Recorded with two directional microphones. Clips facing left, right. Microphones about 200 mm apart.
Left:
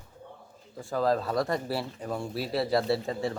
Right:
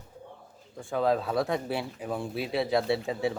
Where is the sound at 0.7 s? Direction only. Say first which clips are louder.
Even; centre (ahead or behind).